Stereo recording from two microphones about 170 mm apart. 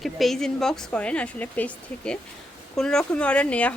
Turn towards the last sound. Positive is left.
turn(degrees=10)  # may be behind; listen again after turning